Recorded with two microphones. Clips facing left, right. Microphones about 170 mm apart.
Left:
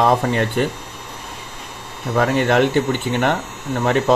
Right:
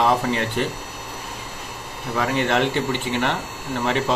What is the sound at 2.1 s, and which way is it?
Speech, 50° left (ahead or behind).